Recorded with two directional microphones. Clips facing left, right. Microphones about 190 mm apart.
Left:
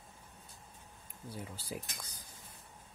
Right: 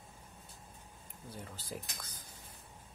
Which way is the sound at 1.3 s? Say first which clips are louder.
Left 3 dB; 10° left (ahead or behind).